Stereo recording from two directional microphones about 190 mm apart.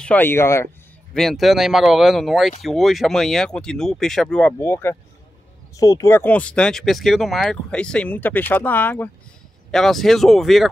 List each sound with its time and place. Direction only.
0.0 s speech: 10° left (ahead or behind)
1.1 s speech: centre (ahead or behind)